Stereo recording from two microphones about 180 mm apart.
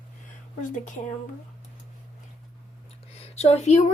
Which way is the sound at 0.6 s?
45° left (ahead or behind).